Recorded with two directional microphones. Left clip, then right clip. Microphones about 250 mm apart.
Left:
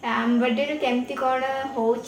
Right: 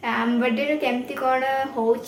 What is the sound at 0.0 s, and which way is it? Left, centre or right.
A woman's voice, centre.